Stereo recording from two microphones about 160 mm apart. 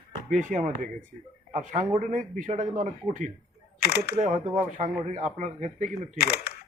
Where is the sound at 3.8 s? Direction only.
90° left.